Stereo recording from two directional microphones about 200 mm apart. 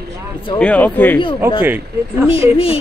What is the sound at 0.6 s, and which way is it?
Speech, 5° left (ahead or behind).